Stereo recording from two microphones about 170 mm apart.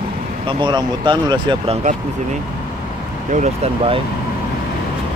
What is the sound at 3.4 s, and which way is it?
Speech, 35° right (ahead or behind).